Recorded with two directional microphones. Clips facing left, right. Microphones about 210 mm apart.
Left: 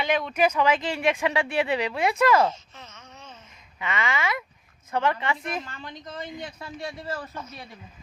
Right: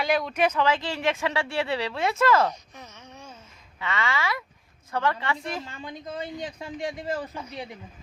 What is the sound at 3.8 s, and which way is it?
Speech, 20° left (ahead or behind).